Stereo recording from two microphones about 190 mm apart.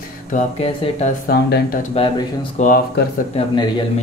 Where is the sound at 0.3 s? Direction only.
35° left (ahead or behind).